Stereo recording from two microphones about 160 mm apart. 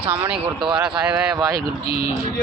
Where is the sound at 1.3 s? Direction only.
25° right (ahead or behind).